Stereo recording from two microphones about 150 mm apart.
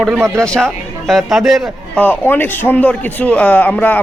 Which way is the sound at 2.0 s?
15° left (ahead or behind).